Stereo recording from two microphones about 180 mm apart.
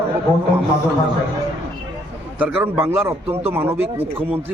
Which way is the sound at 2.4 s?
10° right (ahead or behind).